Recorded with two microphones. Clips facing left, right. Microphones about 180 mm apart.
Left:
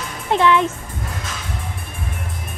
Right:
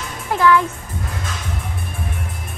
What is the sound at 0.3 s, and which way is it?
Speech, 20° left (ahead or behind).